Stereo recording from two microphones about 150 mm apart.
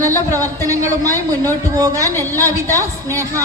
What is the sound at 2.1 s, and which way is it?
Speech, 15° left (ahead or behind).